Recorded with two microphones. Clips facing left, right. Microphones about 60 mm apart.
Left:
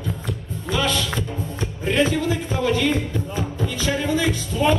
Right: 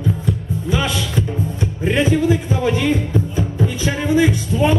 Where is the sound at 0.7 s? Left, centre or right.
Centre.